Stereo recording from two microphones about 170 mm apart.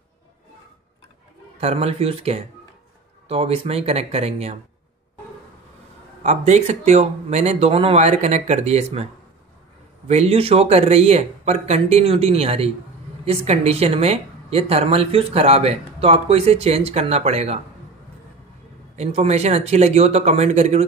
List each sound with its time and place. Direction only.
1.6 s speech: 35° right (ahead or behind)
6.2 s speech: 40° right (ahead or behind)
10.0 s speech: 40° right (ahead or behind)
18.9 s speech: 40° right (ahead or behind)